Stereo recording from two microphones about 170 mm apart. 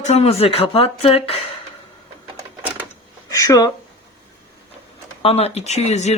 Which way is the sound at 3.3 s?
20° left (ahead or behind).